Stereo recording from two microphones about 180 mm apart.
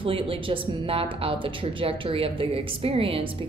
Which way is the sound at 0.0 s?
30° right (ahead or behind).